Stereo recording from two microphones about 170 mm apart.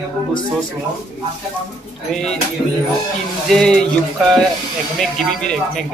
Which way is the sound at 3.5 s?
5° left (ahead or behind).